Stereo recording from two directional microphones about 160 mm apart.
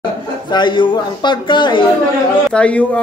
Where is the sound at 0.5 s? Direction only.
30° left (ahead or behind).